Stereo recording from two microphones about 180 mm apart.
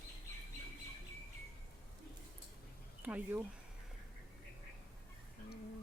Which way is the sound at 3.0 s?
10° right (ahead or behind).